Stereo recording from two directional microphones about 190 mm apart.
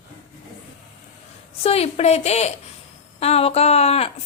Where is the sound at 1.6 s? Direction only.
30° left (ahead or behind).